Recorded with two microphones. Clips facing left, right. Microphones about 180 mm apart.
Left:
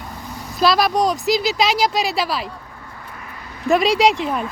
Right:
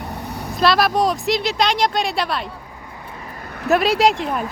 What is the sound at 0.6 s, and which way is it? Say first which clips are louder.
Speech: even; centre (ahead or behind).